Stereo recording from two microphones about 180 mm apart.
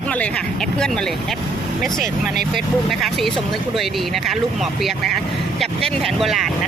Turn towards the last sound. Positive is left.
turn(degrees=0)  # may be behind; listen again after turning